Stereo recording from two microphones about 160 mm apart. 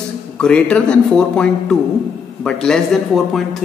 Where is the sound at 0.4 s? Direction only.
5° left (ahead or behind).